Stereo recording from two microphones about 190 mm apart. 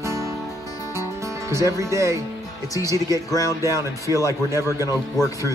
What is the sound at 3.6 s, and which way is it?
Speech, 15° right (ahead or behind).